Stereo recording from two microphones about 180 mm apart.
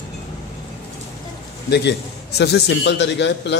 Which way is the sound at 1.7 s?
65° left (ahead or behind).